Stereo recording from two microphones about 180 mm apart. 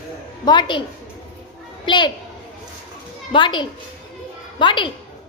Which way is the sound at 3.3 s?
25° left (ahead or behind).